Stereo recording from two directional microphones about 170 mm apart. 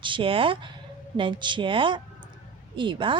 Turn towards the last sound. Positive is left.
turn(degrees=-30)  # may be behind; listen again after turning